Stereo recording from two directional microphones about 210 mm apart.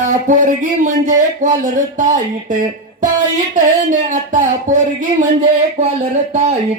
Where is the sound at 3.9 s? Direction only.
35° right (ahead or behind).